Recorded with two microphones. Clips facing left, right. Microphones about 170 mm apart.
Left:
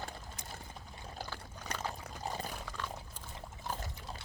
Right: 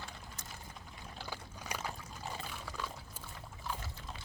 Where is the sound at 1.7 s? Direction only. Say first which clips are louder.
Left 1 dB; 10° right (ahead or behind).